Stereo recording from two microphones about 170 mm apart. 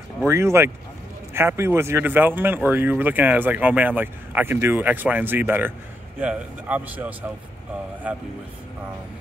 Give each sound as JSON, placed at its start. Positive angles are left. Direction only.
{"t": 0.3, "sound": "speech", "side_deg": -15}